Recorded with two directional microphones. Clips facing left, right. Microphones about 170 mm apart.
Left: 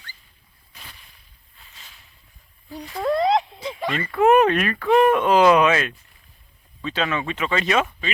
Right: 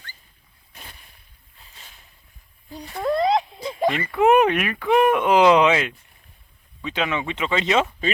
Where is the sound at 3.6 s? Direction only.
40° right (ahead or behind).